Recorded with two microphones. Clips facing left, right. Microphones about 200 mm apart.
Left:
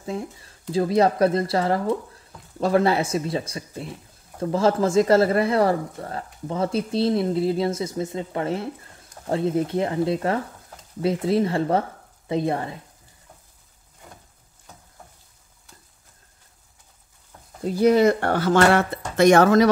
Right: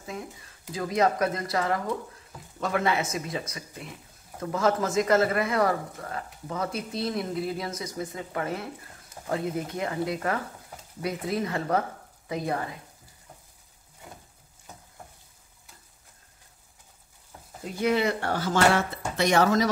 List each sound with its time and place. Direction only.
0.0 s speech: 30° left (ahead or behind)
17.6 s speech: 35° left (ahead or behind)
18.2 s speech: 60° left (ahead or behind)
19.1 s speech: 50° left (ahead or behind)